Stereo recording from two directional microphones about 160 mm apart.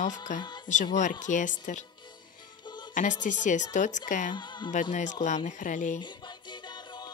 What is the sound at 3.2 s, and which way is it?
Speech, 50° left (ahead or behind).